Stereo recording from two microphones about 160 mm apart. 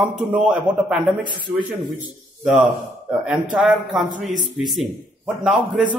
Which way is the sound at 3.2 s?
5° right (ahead or behind).